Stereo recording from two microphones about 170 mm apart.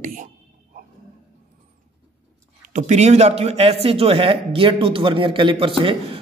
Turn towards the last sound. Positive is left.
turn(degrees=-30)  # may be behind; listen again after turning